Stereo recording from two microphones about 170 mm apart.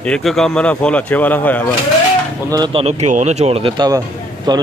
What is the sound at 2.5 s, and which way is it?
Speech, 30° right (ahead or behind).